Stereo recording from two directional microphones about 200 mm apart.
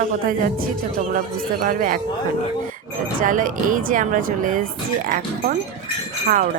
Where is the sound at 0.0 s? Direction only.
45° right (ahead or behind).